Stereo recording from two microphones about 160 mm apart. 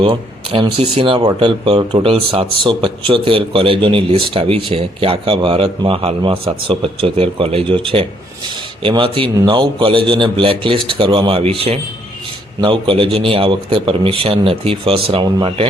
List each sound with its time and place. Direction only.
0.0 s speech: 35° right (ahead or behind)